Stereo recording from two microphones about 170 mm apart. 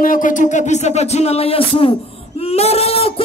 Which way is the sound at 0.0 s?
50° left (ahead or behind).